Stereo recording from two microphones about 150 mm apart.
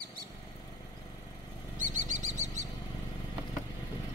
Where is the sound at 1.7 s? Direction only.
55° right (ahead or behind).